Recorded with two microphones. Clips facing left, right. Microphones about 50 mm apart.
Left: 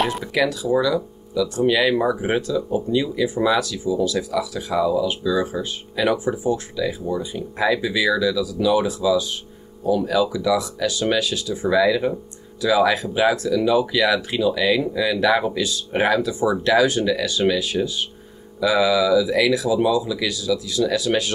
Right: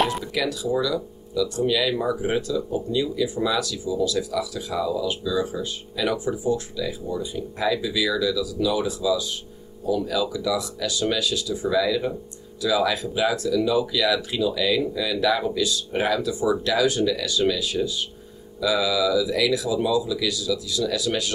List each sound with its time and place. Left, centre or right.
0.2 s speech: left
6.4 s speech: left